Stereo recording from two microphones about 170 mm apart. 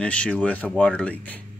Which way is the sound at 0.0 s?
5° left (ahead or behind).